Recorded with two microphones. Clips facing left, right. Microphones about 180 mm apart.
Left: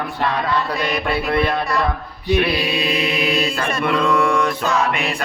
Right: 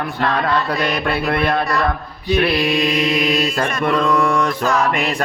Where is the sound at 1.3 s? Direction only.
60° right (ahead or behind).